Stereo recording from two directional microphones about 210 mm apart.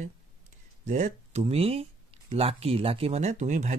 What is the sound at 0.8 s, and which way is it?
Speech, 35° right (ahead or behind).